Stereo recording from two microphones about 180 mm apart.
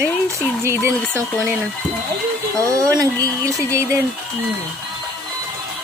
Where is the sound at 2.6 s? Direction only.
15° right (ahead or behind).